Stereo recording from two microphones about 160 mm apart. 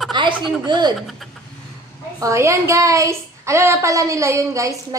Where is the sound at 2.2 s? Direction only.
20° right (ahead or behind).